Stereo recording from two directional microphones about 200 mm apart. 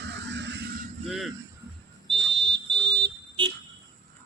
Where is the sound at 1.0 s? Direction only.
Centre (ahead or behind).